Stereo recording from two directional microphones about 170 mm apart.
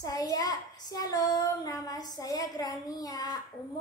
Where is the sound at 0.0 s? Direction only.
20° left (ahead or behind).